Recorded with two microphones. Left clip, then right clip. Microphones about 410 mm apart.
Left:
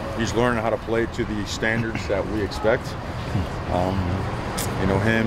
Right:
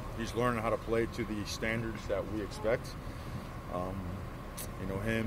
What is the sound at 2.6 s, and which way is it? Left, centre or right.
Speech, right.